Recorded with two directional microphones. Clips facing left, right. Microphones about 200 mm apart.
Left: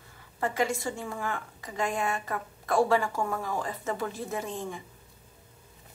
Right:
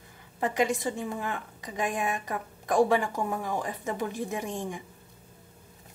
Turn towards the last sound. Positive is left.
turn(degrees=-15)  # may be behind; listen again after turning